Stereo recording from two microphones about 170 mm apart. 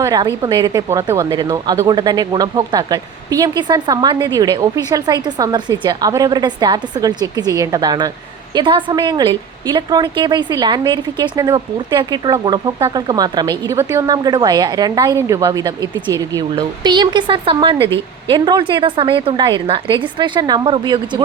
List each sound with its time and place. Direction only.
0.0 s a woman's voice: 25° right (ahead or behind)